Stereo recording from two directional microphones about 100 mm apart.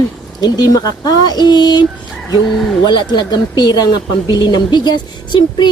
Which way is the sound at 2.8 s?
50° left (ahead or behind).